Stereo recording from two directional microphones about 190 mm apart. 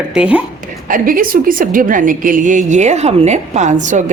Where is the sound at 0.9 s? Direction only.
45° right (ahead or behind).